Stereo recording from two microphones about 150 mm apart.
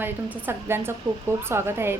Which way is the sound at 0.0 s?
15° right (ahead or behind).